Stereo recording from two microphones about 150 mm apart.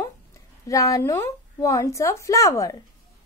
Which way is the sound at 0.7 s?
20° left (ahead or behind).